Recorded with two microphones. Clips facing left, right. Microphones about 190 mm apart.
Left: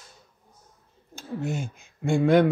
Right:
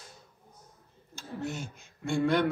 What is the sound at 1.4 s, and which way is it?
Speech, 55° left (ahead or behind).